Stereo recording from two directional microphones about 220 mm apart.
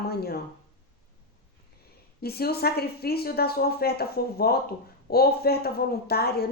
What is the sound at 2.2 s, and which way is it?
A woman's voice, 45° left (ahead or behind).